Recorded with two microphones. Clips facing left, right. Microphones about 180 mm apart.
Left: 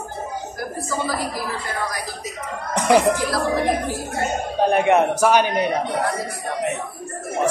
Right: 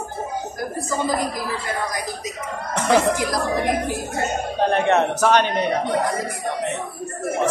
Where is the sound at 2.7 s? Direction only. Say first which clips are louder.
Left 2 dB; 15° left (ahead or behind).